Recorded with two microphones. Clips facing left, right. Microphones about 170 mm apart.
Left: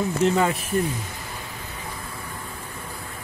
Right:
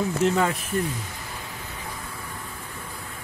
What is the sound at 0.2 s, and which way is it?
Speech, 5° right (ahead or behind).